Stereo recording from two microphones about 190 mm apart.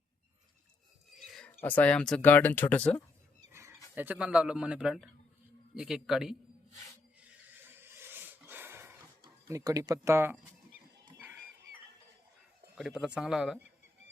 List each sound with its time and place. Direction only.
1.1 s speech: centre (ahead or behind)
3.5 s a sound: 15° right (ahead or behind)
3.9 s a man's voice: 10° right (ahead or behind)
7.3 s a sound: 10° right (ahead or behind)
9.2 s speech: 15° right (ahead or behind)
12.7 s a man's voice: 5° right (ahead or behind)